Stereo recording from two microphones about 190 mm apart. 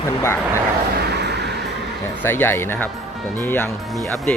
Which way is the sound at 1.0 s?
60° right (ahead or behind).